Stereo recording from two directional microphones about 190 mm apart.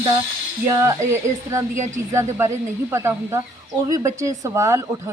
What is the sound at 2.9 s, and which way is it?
Speech, 15° right (ahead or behind).